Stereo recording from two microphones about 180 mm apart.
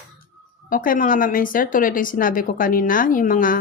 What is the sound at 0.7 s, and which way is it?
A woman's voice, 50° left (ahead or behind).